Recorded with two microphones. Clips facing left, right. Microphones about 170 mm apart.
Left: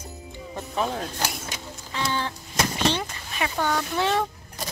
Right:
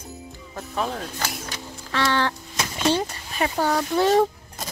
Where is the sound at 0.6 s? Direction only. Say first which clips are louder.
Even; centre (ahead or behind).